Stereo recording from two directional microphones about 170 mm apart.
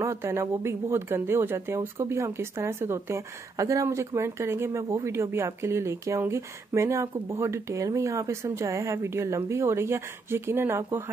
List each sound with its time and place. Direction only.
0.0 s a woman's voice: 15° right (ahead or behind)